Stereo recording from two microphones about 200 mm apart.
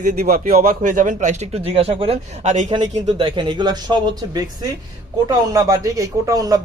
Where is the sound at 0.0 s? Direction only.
35° right (ahead or behind).